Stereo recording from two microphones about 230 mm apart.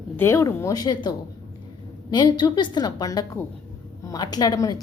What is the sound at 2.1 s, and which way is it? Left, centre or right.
A woman's voice, centre.